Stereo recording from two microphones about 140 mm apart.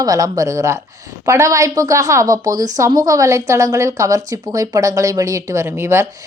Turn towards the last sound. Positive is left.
turn(degrees=-20)  # may be behind; listen again after turning